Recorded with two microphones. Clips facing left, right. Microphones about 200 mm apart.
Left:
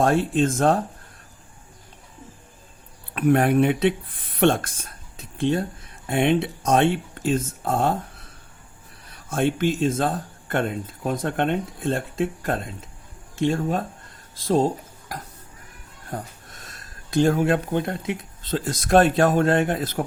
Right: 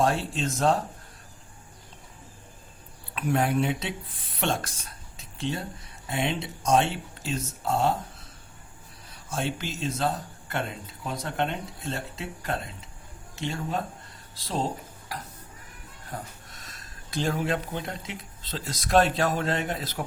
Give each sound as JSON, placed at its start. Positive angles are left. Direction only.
{"t": 0.0, "sound": "speech", "side_deg": 50}
{"t": 3.2, "sound": "speech", "side_deg": 55}
{"t": 4.4, "sound": "a sound", "side_deg": 55}
{"t": 6.1, "sound": "speech", "side_deg": 55}
{"t": 16.0, "sound": "speech", "side_deg": 45}